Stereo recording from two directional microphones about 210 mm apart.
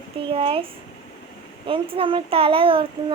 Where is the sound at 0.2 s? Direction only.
25° right (ahead or behind).